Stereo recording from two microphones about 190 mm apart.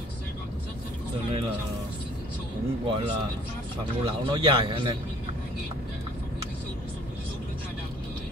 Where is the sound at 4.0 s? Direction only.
25° right (ahead or behind).